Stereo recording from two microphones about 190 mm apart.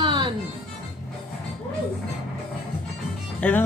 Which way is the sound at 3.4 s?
10° left (ahead or behind).